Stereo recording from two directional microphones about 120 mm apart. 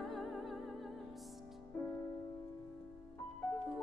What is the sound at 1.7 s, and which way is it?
Music, 20° left (ahead or behind).